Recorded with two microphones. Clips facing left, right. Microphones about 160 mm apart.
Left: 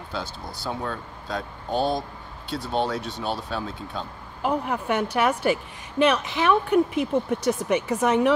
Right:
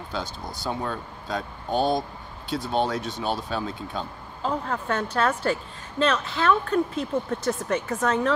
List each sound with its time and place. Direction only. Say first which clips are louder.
0.1 s speech: even; centre (ahead or behind)
4.4 s a woman's voice: left 3 dB; 15° left (ahead or behind)